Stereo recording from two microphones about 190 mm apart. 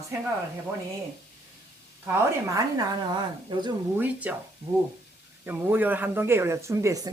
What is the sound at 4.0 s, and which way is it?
Speech, 5° right (ahead or behind).